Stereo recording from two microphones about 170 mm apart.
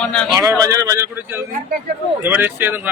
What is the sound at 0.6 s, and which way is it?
Speech, 20° right (ahead or behind).